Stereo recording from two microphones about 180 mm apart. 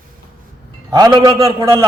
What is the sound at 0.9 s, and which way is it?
Speech, 20° right (ahead or behind).